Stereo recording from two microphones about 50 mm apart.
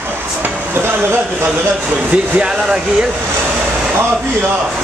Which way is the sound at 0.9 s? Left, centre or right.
Right.